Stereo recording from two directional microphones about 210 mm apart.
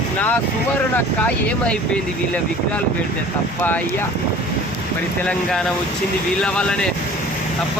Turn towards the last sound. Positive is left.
turn(degrees=5)  # may be behind; listen again after turning